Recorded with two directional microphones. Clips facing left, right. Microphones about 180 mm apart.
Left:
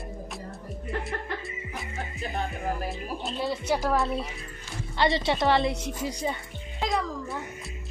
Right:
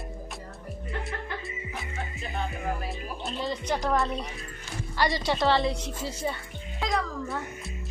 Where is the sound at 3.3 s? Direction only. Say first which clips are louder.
Left 2 dB; 10° left (ahead or behind).